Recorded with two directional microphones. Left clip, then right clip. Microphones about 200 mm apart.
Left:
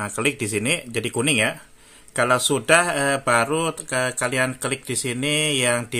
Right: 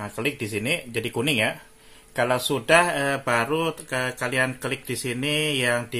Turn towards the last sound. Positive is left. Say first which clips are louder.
# left 2 dB
turn(degrees=25)  # may be behind; listen again after turning